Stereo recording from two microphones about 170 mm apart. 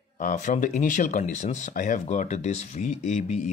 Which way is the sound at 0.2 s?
50° left (ahead or behind).